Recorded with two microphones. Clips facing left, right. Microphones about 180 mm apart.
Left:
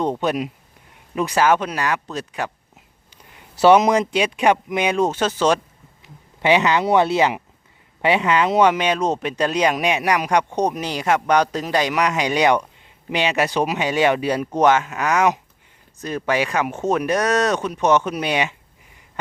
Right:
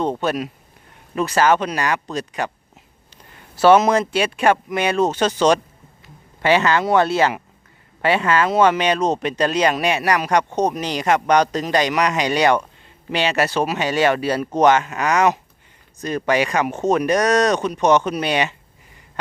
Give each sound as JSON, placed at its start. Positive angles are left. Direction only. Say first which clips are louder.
{"t": 0.0, "sound": "speech", "louder": "even", "side_deg": 15}
{"t": 3.6, "sound": "speech", "louder": "even", "side_deg": 15}
{"t": 6.0, "sound": "speech", "louder": "even", "side_deg": 20}